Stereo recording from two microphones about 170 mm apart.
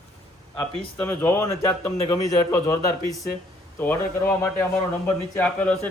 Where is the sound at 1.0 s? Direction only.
15° left (ahead or behind).